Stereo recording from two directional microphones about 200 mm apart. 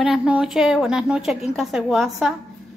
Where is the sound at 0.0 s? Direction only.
5° right (ahead or behind).